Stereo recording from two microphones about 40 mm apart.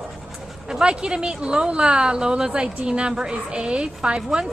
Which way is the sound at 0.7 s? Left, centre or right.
Centre.